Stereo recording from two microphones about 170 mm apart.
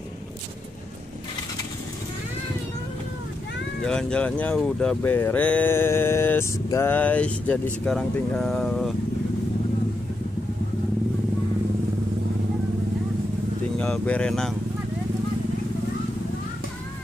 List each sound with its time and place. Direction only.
3.8 s speech: 5° left (ahead or behind)
13.7 s speech: 5° left (ahead or behind)